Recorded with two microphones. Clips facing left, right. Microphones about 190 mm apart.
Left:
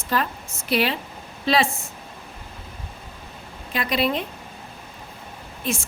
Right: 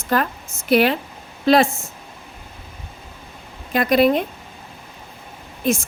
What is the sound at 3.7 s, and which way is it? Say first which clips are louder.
Speech: right 8 dB; 50° right (ahead or behind).